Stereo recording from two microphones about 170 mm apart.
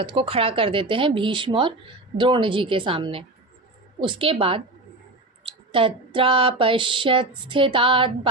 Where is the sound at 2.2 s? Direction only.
30° right (ahead or behind).